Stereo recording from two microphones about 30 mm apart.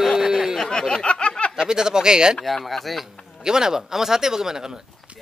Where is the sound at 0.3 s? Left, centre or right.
Centre.